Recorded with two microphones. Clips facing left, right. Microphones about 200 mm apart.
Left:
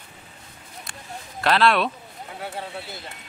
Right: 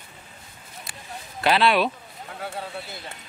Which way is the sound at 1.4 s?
Centre (ahead or behind).